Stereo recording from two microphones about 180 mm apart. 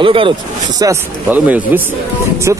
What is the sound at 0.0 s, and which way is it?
Speech, 30° right (ahead or behind).